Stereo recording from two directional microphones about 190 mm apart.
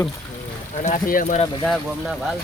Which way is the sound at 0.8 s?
45° left (ahead or behind).